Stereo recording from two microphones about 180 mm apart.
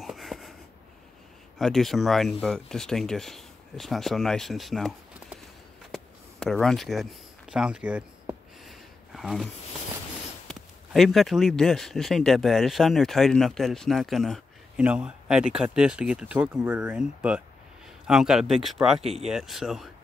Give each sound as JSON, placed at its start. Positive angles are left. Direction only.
{"t": 0.0, "sound": "wheeze", "side_deg": 0}
{"t": 1.6, "sound": "speech", "side_deg": 0}
{"t": 6.4, "sound": "speech", "side_deg": 5}
{"t": 8.6, "sound": "a sound", "side_deg": 0}
{"t": 10.5, "sound": "speech", "side_deg": 0}